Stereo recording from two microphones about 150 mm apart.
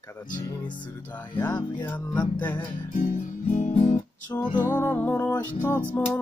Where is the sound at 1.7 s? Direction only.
10° left (ahead or behind).